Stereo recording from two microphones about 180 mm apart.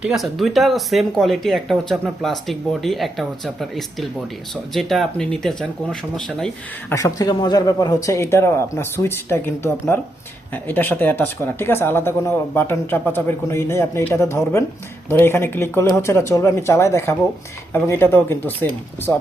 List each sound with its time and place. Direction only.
0.0 s speech: centre (ahead or behind)
6.9 s speech: 20° left (ahead or behind)
10.5 s speech: 10° left (ahead or behind)